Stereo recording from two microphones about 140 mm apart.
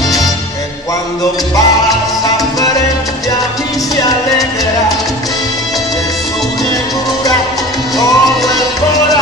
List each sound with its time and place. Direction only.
3.9 s music: 25° left (ahead or behind)
8.0 s music: 25° left (ahead or behind)